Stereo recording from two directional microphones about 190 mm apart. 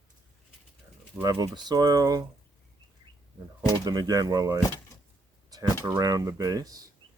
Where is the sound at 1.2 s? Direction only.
20° right (ahead or behind).